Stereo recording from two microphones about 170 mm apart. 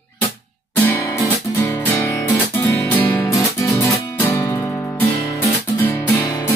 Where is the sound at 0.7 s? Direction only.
15° left (ahead or behind).